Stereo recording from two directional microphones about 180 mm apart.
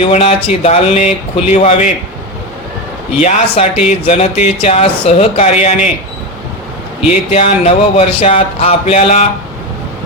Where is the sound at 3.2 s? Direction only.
35° left (ahead or behind).